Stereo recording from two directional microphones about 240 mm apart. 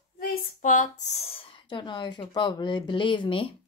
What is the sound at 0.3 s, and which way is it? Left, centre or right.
A woman's voice, left.